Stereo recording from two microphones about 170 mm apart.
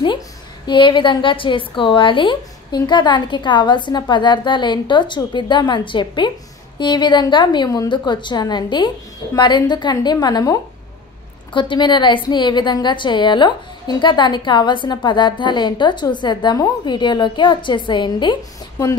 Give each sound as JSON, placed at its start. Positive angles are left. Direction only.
{"t": 0.7, "sound": "a woman's voice", "side_deg": 30}